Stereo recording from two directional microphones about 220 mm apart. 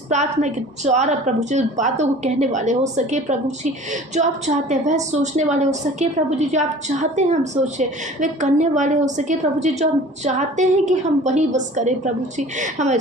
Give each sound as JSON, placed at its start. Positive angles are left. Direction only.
{"t": 0.1, "sound": "a woman's voice", "side_deg": -30}